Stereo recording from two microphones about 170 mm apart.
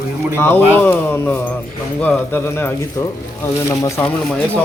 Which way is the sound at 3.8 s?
15° left (ahead or behind).